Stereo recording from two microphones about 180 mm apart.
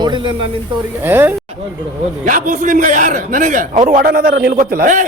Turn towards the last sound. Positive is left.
turn(degrees=-50)  # may be behind; listen again after turning